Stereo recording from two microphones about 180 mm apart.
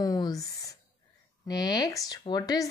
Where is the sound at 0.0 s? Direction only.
20° left (ahead or behind).